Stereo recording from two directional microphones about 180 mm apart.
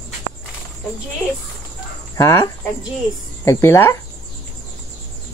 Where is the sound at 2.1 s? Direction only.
15° left (ahead or behind).